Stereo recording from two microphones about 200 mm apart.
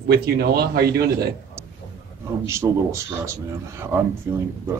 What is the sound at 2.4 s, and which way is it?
Speech, 15° right (ahead or behind).